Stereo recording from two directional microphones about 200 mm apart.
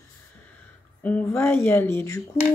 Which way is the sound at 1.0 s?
5° left (ahead or behind).